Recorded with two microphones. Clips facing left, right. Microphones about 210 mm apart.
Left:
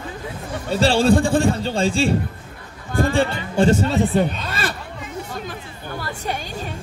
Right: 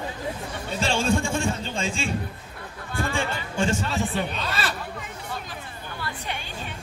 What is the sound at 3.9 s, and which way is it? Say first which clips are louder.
Speech: left 8 dB; 55° left (ahead or behind).